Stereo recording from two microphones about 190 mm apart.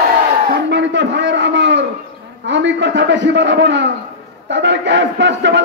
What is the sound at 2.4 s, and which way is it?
A man's voice, 70° right (ahead or behind).